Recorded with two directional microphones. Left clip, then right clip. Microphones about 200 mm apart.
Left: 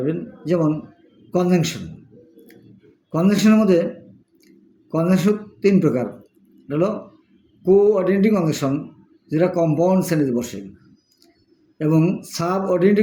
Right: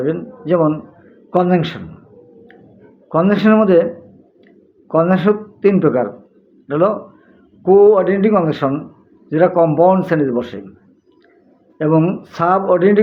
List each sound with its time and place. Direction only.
0.0 s speech: 35° left (ahead or behind)
3.1 s speech: 35° left (ahead or behind)
4.9 s a man's voice: 35° left (ahead or behind)
11.8 s speech: 35° left (ahead or behind)